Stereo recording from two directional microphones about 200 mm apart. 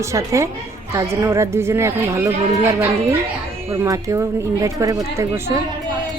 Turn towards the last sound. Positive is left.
turn(degrees=-15)  # may be behind; listen again after turning